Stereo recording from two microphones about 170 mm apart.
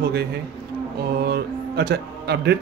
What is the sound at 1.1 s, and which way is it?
Mantra, 70° right (ahead or behind).